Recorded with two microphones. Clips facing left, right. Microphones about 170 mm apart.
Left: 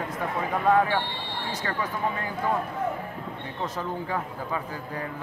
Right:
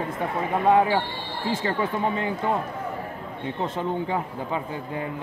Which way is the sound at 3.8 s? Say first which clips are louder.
Right 4 dB; 25° right (ahead or behind).